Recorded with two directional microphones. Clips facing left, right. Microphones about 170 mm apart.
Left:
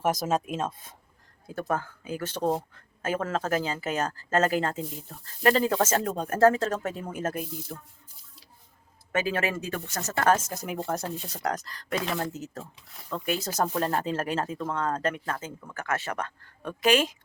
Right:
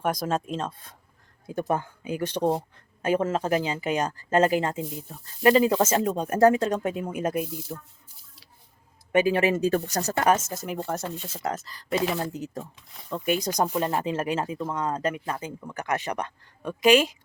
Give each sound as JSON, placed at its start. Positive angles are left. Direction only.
{"t": 0.0, "sound": "speech", "side_deg": 5}
{"t": 1.5, "sound": "speech", "side_deg": -15}
{"t": 9.1, "sound": "speech", "side_deg": -15}
{"t": 10.2, "sound": "speech", "side_deg": -10}
{"t": 13.1, "sound": "speech", "side_deg": -15}